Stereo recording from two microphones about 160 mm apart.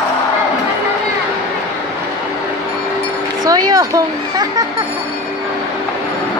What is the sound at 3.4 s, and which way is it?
Children playing, 25° right (ahead or behind).